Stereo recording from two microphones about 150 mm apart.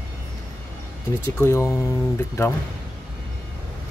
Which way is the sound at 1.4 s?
20° left (ahead or behind).